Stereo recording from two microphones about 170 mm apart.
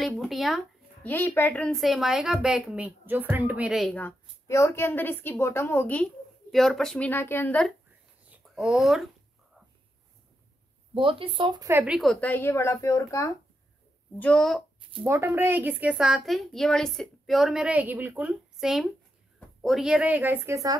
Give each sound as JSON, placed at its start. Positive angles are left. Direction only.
{"t": 0.0, "sound": "a woman's voice", "side_deg": 0}
{"t": 1.0, "sound": "a woman's voice", "side_deg": 10}
{"t": 4.0, "sound": "a woman's voice", "side_deg": 15}
{"t": 8.3, "sound": "speech", "side_deg": -5}
{"t": 11.0, "sound": "speech", "side_deg": -30}
{"t": 11.7, "sound": "a woman's voice", "side_deg": -5}
{"t": 14.1, "sound": "a woman's voice", "side_deg": 5}
{"t": 15.0, "sound": "a woman's voice", "side_deg": -15}